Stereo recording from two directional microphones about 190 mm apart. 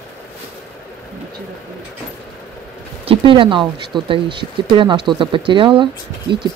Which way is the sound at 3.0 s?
25° right (ahead or behind).